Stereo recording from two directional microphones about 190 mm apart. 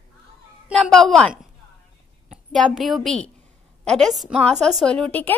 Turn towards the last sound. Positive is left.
turn(degrees=10)  # may be behind; listen again after turning